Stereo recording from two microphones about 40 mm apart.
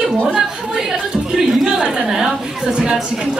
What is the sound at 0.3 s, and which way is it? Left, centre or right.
Speech, centre.